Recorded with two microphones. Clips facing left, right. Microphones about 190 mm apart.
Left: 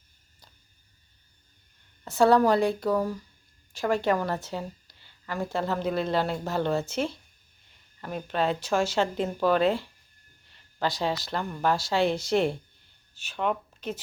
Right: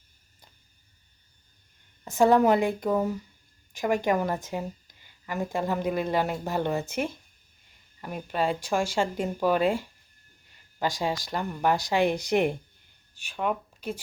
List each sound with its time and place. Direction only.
2.0 s speech: 15° right (ahead or behind)